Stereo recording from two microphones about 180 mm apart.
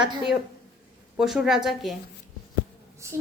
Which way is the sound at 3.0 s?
15° right (ahead or behind).